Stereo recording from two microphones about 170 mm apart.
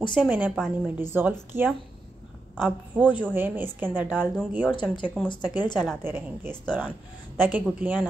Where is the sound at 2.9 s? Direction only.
10° right (ahead or behind).